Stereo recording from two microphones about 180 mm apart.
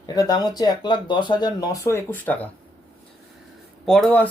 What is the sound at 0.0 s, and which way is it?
Speech, 20° left (ahead or behind).